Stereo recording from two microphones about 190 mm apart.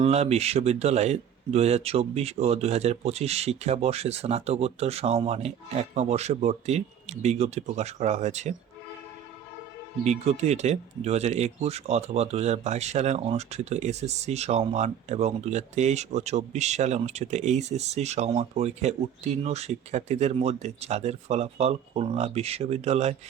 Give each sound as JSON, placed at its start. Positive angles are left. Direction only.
{"t": 0.0, "sound": "speech", "side_deg": -35}
{"t": 10.0, "sound": "speech", "side_deg": -35}